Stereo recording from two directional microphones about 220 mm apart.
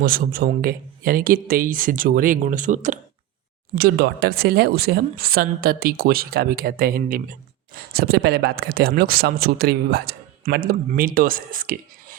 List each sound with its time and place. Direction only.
0.0 s speech: 45° right (ahead or behind)
3.8 s speech: 45° right (ahead or behind)